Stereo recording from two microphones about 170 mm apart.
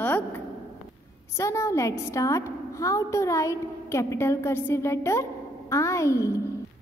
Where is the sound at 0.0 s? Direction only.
10° left (ahead or behind).